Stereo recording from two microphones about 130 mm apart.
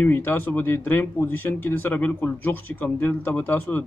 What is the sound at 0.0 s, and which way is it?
Speech, 15° left (ahead or behind).